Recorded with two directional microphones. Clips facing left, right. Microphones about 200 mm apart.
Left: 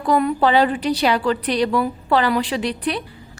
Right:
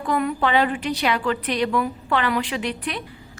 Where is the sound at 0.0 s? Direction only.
35° left (ahead or behind).